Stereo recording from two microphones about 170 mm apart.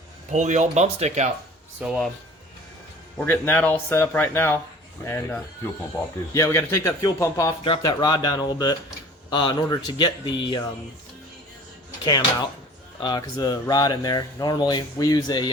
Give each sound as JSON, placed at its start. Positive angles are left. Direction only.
{"t": 0.3, "sound": "speech", "side_deg": -45}
{"t": 1.8, "sound": "speech", "side_deg": 0}
{"t": 3.2, "sound": "a man's voice", "side_deg": 10}
{"t": 12.0, "sound": "a man's voice", "side_deg": 25}